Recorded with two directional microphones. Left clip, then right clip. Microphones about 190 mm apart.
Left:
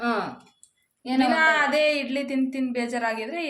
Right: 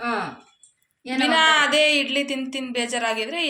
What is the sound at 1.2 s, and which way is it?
Speech, 5° left (ahead or behind).